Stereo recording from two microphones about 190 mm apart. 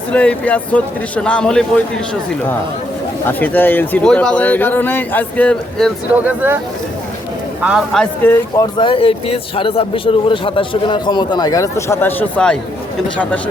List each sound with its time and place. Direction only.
0.1 s speech: 5° left (ahead or behind)
3.2 s speech: 10° left (ahead or behind)
6.1 s speech: 10° right (ahead or behind)
7.6 s a man's voice: 5° right (ahead or behind)
8.2 s speech: 10° left (ahead or behind)
8.8 s speech: 30° left (ahead or behind); by 12.5 s 5° left (ahead or behind)